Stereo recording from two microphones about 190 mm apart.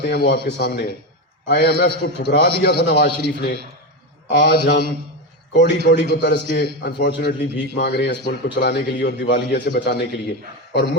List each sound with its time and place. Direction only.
0.0 s a man's voice: 55° left (ahead or behind)